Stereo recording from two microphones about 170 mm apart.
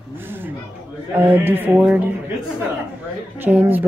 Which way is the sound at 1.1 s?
10° right (ahead or behind).